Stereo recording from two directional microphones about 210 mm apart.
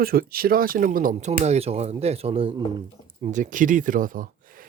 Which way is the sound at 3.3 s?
40° right (ahead or behind).